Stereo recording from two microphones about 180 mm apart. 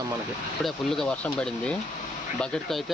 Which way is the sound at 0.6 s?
Centre (ahead or behind).